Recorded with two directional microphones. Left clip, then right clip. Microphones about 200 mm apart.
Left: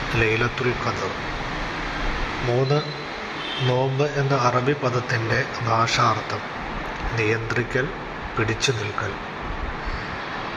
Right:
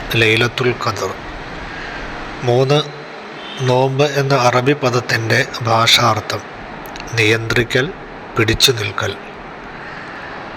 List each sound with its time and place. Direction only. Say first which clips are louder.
0.1 s a man's voice: right 9 dB; 20° right (ahead or behind)
2.5 s a man's voice: right 9 dB; 25° right (ahead or behind)